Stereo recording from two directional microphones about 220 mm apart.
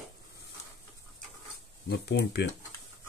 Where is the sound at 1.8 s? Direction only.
50° left (ahead or behind).